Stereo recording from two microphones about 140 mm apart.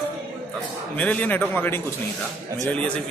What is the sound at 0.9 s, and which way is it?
A man's voice, 10° left (ahead or behind).